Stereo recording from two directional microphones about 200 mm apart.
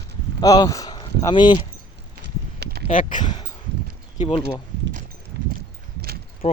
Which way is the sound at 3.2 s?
25° left (ahead or behind).